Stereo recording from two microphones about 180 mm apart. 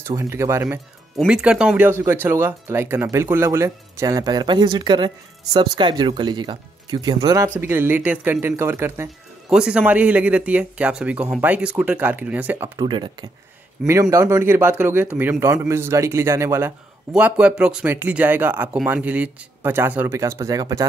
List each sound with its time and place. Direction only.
0.0 s speech: 15° right (ahead or behind)
14.1 s speech: 15° right (ahead or behind)